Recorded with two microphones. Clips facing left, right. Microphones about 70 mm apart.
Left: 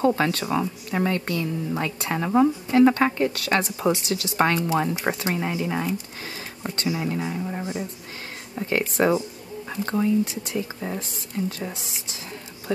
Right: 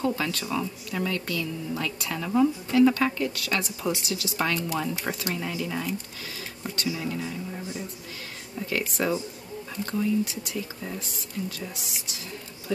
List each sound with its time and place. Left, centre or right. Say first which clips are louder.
0.0 s a woman's voice: left 6 dB; left